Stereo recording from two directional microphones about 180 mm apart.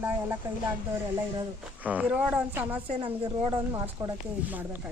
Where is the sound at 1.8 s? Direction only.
10° right (ahead or behind).